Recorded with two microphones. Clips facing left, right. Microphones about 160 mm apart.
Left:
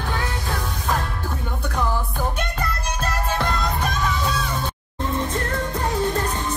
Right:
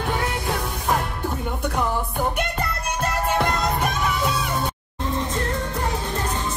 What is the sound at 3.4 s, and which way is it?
Music, 10° right (ahead or behind).